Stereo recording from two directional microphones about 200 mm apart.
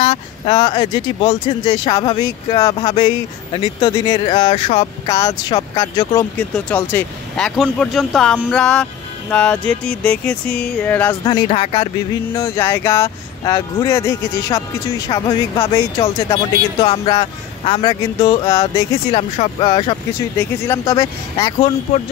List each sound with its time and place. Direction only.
0.0 s speech: 35° left (ahead or behind)
0.6 s speech: 20° left (ahead or behind)
4.5 s speech: 35° left (ahead or behind)
5.0 s speech: 20° left (ahead or behind)
11.2 s speech: 25° left (ahead or behind)
19.1 s speech: 30° left (ahead or behind)
20.3 s speech: 10° left (ahead or behind)